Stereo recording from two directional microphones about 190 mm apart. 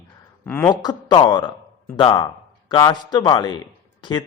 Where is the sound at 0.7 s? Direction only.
20° left (ahead or behind).